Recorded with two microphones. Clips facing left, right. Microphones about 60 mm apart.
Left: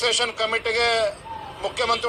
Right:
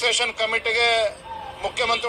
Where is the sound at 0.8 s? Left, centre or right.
Left.